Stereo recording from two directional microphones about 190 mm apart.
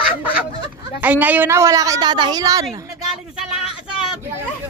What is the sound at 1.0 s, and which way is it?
A woman's voice, 10° right (ahead or behind).